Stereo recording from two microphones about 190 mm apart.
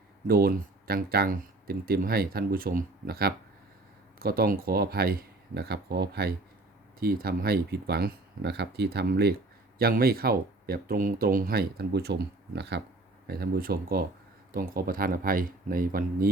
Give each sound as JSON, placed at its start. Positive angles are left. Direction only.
{"t": 0.3, "sound": "speech", "side_deg": -50}